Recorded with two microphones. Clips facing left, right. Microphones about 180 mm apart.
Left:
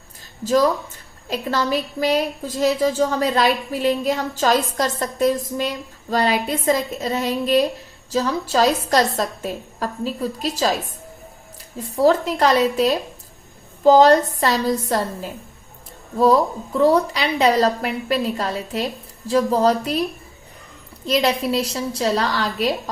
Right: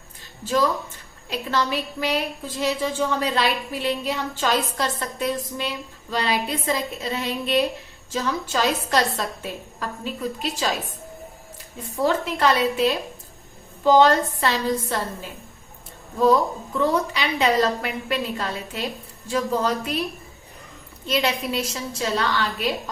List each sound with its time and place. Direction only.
0.4 s a woman's voice: 40° left (ahead or behind)
11.8 s a woman's voice: 35° left (ahead or behind)
21.1 s a woman's voice: 35° left (ahead or behind)